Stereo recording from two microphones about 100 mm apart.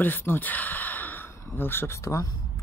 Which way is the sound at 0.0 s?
20° left (ahead or behind).